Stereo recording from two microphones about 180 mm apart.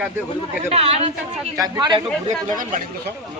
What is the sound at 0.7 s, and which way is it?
Speech, 35° right (ahead or behind).